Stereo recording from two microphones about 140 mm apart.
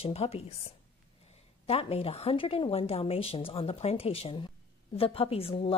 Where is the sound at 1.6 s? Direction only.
45° left (ahead or behind).